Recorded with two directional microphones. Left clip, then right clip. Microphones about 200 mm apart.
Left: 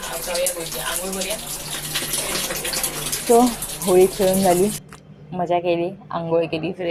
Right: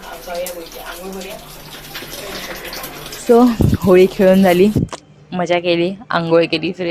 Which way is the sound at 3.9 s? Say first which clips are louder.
Right 5 dB; 50° right (ahead or behind).